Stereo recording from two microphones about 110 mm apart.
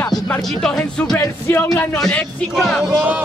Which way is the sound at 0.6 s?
10° left (ahead or behind).